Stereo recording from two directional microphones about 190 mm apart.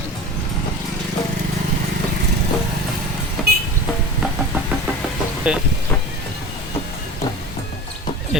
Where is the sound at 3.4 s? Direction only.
Centre (ahead or behind).